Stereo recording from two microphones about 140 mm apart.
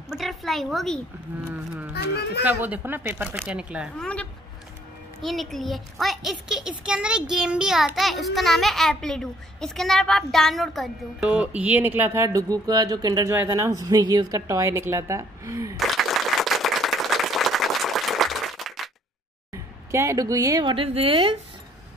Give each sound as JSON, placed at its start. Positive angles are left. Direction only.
{"t": 0.1, "sound": "a woman's voice", "side_deg": 0}
{"t": 2.4, "sound": "a child's voice", "side_deg": -10}
{"t": 4.0, "sound": "a child's voice", "side_deg": 10}
{"t": 16.0, "sound": "applause", "side_deg": 0}
{"t": 19.9, "sound": "speech", "side_deg": -20}
{"t": 20.7, "sound": "a woman's voice", "side_deg": -40}